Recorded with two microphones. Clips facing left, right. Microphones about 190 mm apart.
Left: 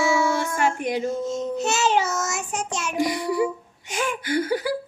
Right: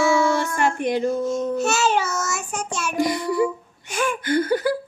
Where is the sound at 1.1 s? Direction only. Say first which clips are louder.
Right 3 dB; 20° left (ahead or behind).